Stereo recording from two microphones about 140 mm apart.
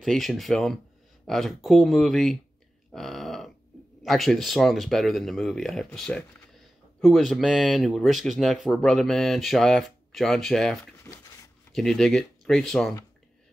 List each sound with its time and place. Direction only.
0.0 s speech: centre (ahead or behind)
2.9 s grunt: centre (ahead or behind)
4.0 s speech: centre (ahead or behind)
11.1 s a sound: 15° left (ahead or behind)
11.7 s speech: 5° left (ahead or behind)